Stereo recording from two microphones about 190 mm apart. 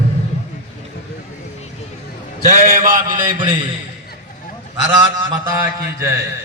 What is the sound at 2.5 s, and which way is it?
Speech, 45° right (ahead or behind).